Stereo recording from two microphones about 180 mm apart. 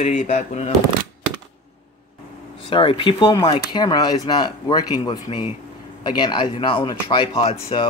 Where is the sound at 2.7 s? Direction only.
30° left (ahead or behind).